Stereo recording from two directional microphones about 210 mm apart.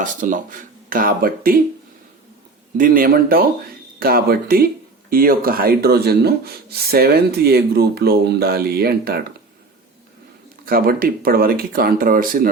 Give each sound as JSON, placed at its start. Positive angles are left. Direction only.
{"t": 0.0, "sound": "speech", "side_deg": -40}
{"t": 2.7, "sound": "speech", "side_deg": -40}
{"t": 10.7, "sound": "speech", "side_deg": -45}